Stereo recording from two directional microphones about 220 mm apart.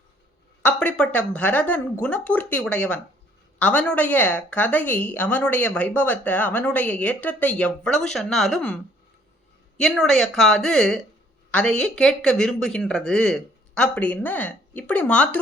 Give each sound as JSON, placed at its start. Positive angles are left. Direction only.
{"t": 0.6, "sound": "a woman's voice", "side_deg": 5}